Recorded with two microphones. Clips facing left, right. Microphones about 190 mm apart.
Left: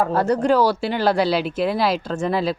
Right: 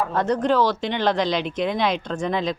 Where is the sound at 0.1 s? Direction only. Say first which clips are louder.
Left 3 dB; 10° left (ahead or behind).